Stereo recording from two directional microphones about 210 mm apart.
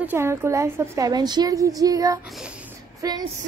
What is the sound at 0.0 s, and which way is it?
A woman's voice, 10° right (ahead or behind).